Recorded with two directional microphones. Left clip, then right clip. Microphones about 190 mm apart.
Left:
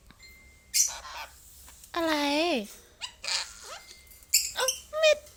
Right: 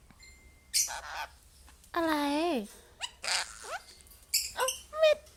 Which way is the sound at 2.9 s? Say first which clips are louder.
Left 1 dB; 30° right (ahead or behind).